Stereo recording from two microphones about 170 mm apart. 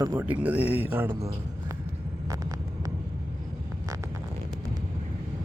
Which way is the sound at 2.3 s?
20° right (ahead or behind).